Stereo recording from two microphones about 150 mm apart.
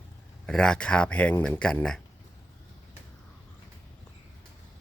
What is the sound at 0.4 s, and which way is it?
Speech, 5° left (ahead or behind).